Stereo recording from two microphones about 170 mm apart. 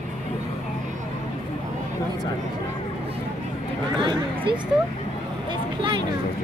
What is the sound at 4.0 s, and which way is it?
Speech, 25° right (ahead or behind).